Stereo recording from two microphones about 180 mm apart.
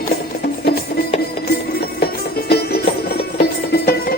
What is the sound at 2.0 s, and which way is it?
Music, 60° left (ahead or behind).